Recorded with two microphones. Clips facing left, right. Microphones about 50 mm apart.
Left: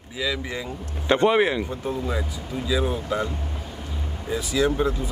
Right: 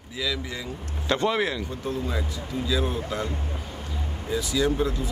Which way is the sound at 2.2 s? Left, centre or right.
Centre.